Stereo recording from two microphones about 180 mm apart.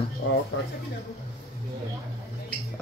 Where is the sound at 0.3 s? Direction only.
90° left.